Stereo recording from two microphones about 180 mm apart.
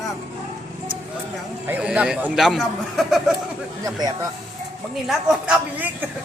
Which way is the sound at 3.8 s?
20° right (ahead or behind).